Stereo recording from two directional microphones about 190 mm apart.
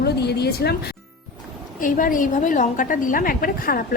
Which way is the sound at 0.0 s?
60° left (ahead or behind).